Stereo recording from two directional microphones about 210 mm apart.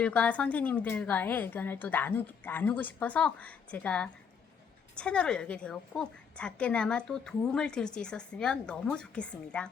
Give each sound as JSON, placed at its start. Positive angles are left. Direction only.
{"t": 0.0, "sound": "a woman's voice", "side_deg": 5}